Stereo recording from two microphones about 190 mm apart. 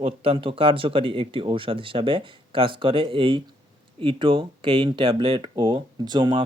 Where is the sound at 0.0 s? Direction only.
30° right (ahead or behind).